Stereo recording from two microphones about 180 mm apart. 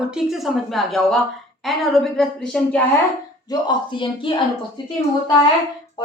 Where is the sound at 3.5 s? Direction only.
25° left (ahead or behind).